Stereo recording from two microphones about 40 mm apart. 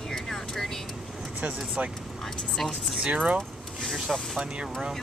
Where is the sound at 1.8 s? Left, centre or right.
Right.